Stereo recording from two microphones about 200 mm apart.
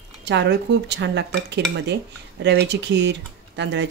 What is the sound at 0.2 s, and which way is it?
Speech, 60° right (ahead or behind).